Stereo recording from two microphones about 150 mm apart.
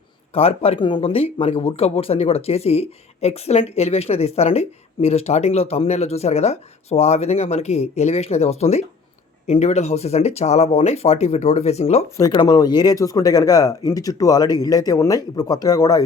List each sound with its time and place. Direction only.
0.3 s speech: 40° left (ahead or behind)
12.1 s speech: 25° left (ahead or behind)